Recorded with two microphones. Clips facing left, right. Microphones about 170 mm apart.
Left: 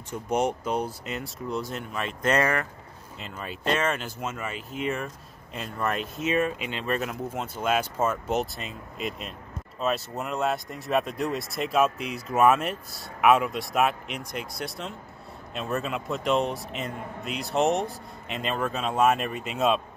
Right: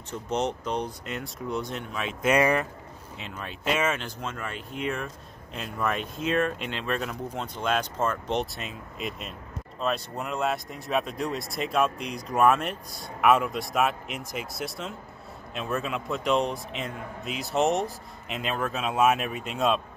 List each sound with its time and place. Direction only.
0.1 s speech: 10° left (ahead or behind)
2.3 s speech: 15° right (ahead or behind)
3.2 s speech: centre (ahead or behind)
4.0 s speech: 5° left (ahead or behind)